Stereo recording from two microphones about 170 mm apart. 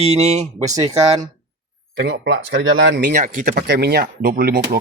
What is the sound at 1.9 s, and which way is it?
Speech, 80° right.